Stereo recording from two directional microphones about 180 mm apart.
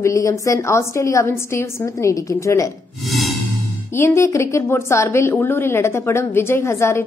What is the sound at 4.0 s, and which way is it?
A woman's voice, 15° left (ahead or behind).